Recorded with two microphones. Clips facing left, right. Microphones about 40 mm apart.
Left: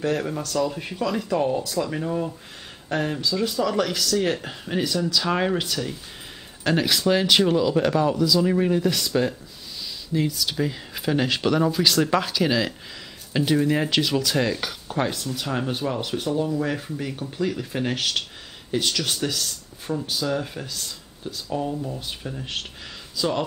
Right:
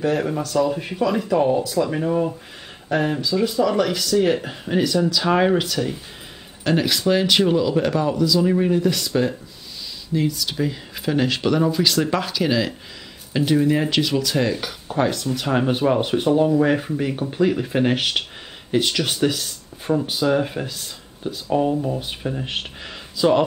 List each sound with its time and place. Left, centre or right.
0.0 s speech: centre
6.6 s speech: centre
15.4 s speech: right